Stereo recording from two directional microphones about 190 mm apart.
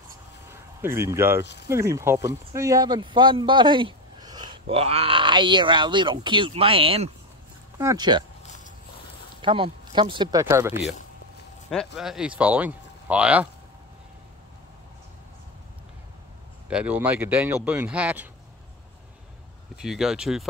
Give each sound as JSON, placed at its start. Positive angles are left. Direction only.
{"t": 0.5, "sound": "a sound", "side_deg": -15}
{"t": 1.7, "sound": "speech", "side_deg": -15}
{"t": 9.4, "sound": "speech", "side_deg": -25}
{"t": 10.4, "sound": "speech", "side_deg": -10}
{"t": 11.7, "sound": "speech", "side_deg": 0}
{"t": 16.6, "sound": "speech", "side_deg": -5}
{"t": 19.8, "sound": "speech", "side_deg": -5}